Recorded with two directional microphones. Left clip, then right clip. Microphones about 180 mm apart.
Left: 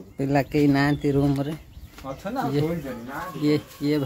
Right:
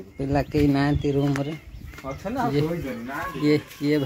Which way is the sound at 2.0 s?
30° right (ahead or behind).